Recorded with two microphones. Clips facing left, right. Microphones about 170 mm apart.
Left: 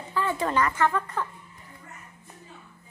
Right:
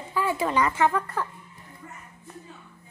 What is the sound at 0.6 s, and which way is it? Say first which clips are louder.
Speech: right 2 dB; 20° right (ahead or behind).